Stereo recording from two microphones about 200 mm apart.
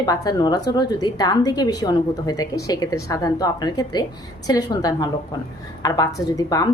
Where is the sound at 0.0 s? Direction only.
20° left (ahead or behind).